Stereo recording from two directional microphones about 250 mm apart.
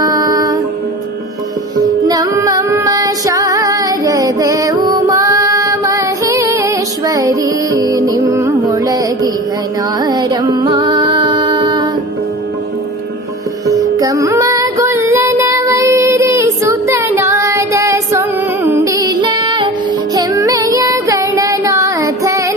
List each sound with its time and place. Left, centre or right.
0.0 s music: centre
2.0 s female singing: centre
10.0 s music: centre
13.7 s music: centre
20.1 s child singing: centre